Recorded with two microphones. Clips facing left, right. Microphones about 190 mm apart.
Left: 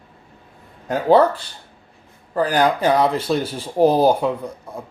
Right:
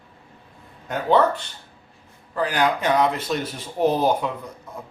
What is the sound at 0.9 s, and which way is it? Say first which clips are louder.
Speech: left 5 dB; 35° left (ahead or behind).